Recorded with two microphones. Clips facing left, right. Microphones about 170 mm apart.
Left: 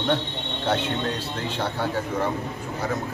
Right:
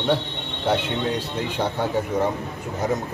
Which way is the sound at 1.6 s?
15° right (ahead or behind).